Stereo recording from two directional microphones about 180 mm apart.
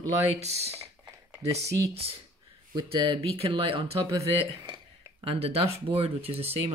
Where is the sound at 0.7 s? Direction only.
15° right (ahead or behind).